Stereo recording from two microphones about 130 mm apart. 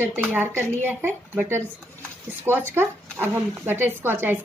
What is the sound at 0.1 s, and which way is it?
Speech, 15° right (ahead or behind).